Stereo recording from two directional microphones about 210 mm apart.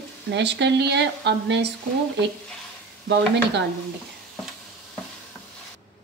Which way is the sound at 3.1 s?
55° right (ahead or behind).